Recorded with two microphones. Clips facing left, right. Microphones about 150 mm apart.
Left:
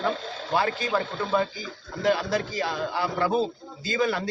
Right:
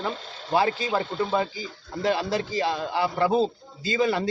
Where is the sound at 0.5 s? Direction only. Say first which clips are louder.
Right 2 dB; 30° right (ahead or behind).